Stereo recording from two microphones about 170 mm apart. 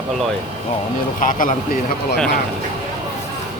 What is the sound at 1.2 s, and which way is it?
Speech, 50° left (ahead or behind).